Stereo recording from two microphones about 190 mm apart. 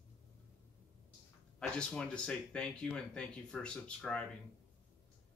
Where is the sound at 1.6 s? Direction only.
5° left (ahead or behind).